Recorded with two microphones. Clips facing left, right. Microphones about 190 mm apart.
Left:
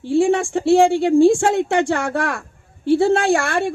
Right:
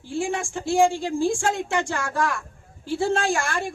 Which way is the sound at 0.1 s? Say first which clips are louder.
Left 10 dB; 65° left (ahead or behind).